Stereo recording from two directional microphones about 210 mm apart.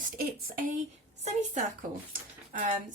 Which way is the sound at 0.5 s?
40° right (ahead or behind).